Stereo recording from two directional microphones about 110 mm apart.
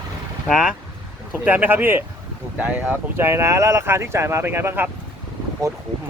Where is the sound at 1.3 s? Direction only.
15° right (ahead or behind).